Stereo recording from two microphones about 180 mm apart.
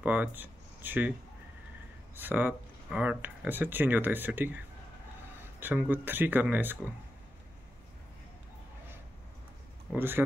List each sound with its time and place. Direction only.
0.0 s speech: 10° right (ahead or behind)
2.1 s speech: 10° right (ahead or behind)
5.6 s speech: 10° right (ahead or behind)
9.9 s speech: 10° right (ahead or behind)